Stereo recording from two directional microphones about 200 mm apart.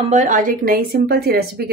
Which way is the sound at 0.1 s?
40° right (ahead or behind).